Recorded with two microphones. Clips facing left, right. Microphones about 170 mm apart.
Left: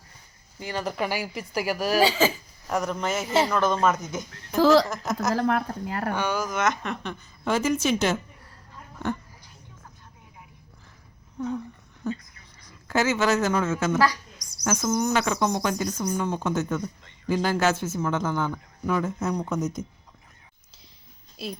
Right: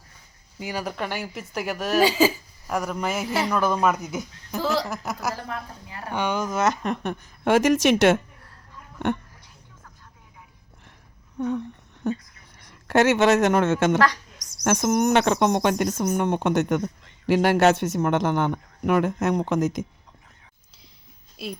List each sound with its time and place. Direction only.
0.6 s speech: 10° right (ahead or behind)
0.9 s a woman's voice: 5° left (ahead or behind)
2.0 s speech: 15° right (ahead or behind)
2.6 s a woman's voice: 5° right (ahead or behind)
4.3 s a woman's voice: 80° left
4.9 s a woman's voice: centre (ahead or behind)
5.3 s speech: 90° left
6.1 s speech: 20° right (ahead or behind)
7.0 s speech: 65° right (ahead or behind)
11.3 s a sound: 70° right (ahead or behind)
12.0 s speech: 70° right (ahead or behind)
19.5 s speech: 90° right
21.4 s a woman's voice: centre (ahead or behind)